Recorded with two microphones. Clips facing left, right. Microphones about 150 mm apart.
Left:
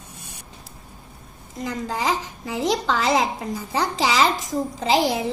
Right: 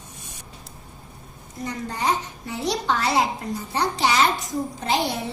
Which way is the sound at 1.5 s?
90° left.